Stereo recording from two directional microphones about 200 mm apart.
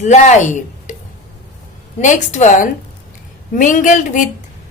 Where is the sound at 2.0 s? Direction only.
40° left (ahead or behind).